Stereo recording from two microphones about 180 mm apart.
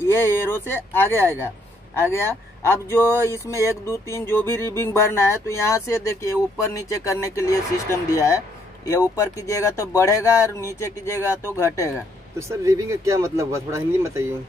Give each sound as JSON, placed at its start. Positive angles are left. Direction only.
{"t": 0.0, "sound": "speech", "side_deg": 15}
{"t": 12.4, "sound": "speech", "side_deg": -15}